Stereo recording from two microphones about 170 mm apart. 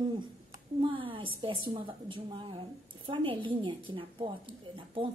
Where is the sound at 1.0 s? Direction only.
30° right (ahead or behind).